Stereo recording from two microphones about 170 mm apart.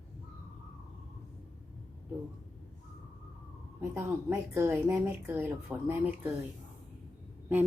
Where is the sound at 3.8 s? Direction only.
15° right (ahead or behind).